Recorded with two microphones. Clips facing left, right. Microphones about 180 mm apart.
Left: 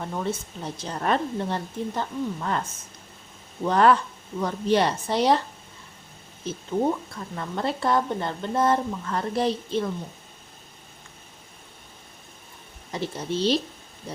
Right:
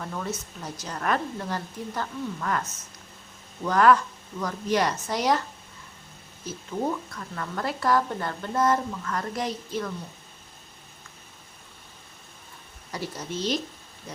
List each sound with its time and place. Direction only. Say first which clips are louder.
0.0 s speech: left 4 dB; 25° left (ahead or behind)
6.4 s speech: left 5 dB; 25° left (ahead or behind)
12.9 s speech: left 4 dB; 25° left (ahead or behind)